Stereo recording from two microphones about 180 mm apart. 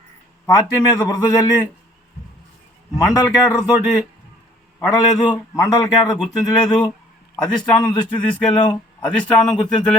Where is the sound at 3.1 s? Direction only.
20° left (ahead or behind).